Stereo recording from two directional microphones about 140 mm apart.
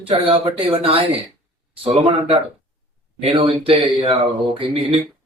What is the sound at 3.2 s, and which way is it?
A man's voice, 45° right (ahead or behind).